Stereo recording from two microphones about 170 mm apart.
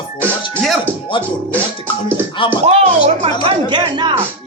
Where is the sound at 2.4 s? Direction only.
30° left (ahead or behind).